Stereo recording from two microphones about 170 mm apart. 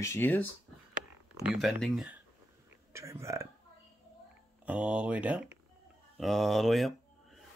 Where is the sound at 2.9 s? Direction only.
15° right (ahead or behind).